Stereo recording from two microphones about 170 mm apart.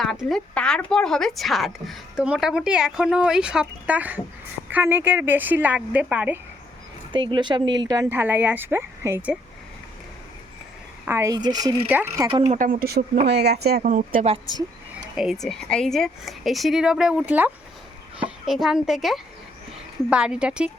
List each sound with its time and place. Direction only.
0.0 s speech: centre (ahead or behind)
7.1 s speech: 25° right (ahead or behind)
8.1 s speech: 10° right (ahead or behind)
11.0 s speech: 15° right (ahead or behind)
11.9 s speech: 10° right (ahead or behind)
12.3 s speech: 35° right (ahead or behind)
12.8 s speech: 65° right (ahead or behind)
13.2 s speech: 75° right (ahead or behind)
13.9 s a woman's voice: 50° right (ahead or behind)
15.1 s speech: 5° right (ahead or behind)